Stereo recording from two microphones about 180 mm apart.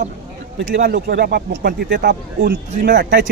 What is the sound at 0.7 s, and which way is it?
Speech, 60° right (ahead or behind).